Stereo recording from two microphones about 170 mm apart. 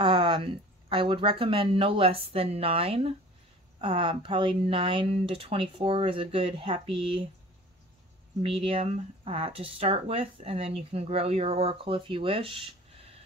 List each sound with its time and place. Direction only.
0.0 s speech: 30° right (ahead or behind)
8.4 s speech: 30° right (ahead or behind)